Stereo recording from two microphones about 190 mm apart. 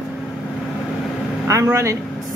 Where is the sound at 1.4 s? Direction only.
15° right (ahead or behind).